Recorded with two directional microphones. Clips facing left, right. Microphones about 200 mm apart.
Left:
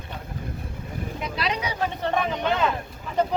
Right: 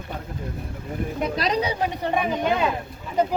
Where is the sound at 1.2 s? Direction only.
40° right (ahead or behind).